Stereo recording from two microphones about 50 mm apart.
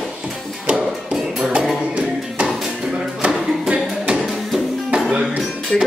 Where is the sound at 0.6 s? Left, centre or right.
Centre.